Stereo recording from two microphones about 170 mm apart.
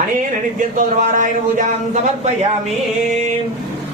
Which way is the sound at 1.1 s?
50° right (ahead or behind).